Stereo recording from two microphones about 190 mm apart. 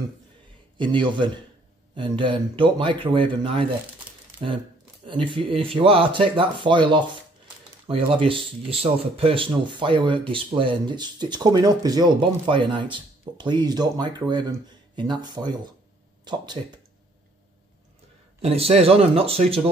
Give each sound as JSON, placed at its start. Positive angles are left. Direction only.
{"t": 0.7, "sound": "speech", "side_deg": -25}
{"t": 5.0, "sound": "speech", "side_deg": -25}
{"t": 16.6, "sound": "speech", "side_deg": -35}
{"t": 18.4, "sound": "speech", "side_deg": -30}